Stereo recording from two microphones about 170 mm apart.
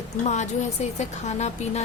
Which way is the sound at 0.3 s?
40° left (ahead or behind).